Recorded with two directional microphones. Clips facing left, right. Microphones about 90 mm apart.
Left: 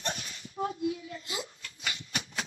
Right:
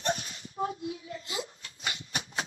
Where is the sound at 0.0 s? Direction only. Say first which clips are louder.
Right 5 dB; 30° right (ahead or behind).